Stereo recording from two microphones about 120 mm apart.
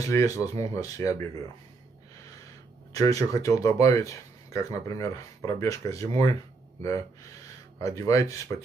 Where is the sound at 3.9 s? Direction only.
25° left (ahead or behind).